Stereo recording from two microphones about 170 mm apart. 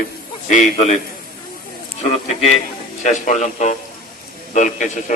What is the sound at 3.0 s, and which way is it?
A man's voice, 45° left (ahead or behind).